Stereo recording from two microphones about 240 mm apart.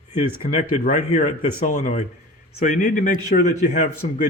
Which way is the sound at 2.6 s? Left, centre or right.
Left.